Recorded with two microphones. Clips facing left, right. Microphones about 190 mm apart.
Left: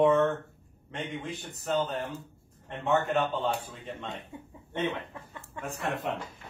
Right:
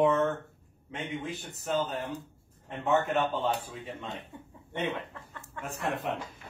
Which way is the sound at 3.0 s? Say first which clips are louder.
Left 1 dB; centre (ahead or behind).